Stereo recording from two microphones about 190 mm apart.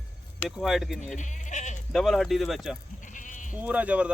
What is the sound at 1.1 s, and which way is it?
Speech, 40° left (ahead or behind).